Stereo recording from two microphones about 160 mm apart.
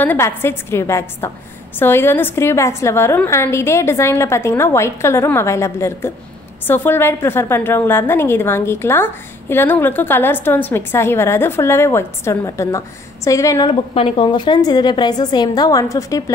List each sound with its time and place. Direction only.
0.0 s a woman's voice: 10° left (ahead or behind)
13.7 s a woman's voice: 35° left (ahead or behind)